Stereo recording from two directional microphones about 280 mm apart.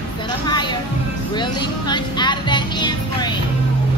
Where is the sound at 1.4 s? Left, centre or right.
Centre.